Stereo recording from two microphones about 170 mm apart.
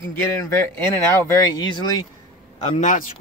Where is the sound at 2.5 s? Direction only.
45° left (ahead or behind).